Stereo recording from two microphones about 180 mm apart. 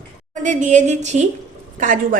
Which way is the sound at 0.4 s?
45° right (ahead or behind).